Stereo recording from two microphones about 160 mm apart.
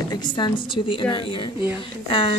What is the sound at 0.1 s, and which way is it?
A woman's voice, 25° left (ahead or behind).